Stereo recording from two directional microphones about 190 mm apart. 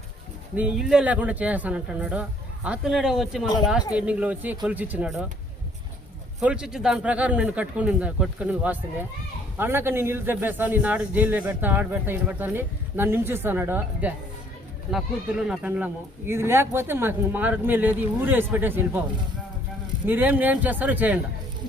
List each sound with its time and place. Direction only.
0.5 s speech: 5° right (ahead or behind)
6.4 s speech: 5° right (ahead or behind)
20.1 s speech: 10° right (ahead or behind)